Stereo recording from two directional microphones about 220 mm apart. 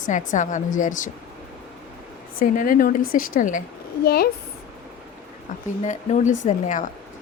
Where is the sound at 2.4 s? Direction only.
40° left (ahead or behind).